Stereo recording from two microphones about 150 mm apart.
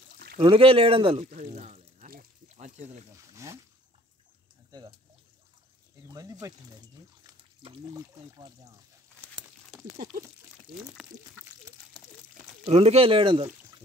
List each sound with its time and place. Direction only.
0.4 s speech: 35° right (ahead or behind)
1.2 s pour: 50° right (ahead or behind)
2.5 s a sound: 50° right (ahead or behind)
3.4 s speech: 20° right (ahead or behind)
4.6 s speech: 25° right (ahead or behind)
6.0 s speech: 25° right (ahead or behind)
7.9 s speech: 25° right (ahead or behind)
9.2 s a sound: 10° right (ahead or behind)
12.6 s speech: 45° right (ahead or behind)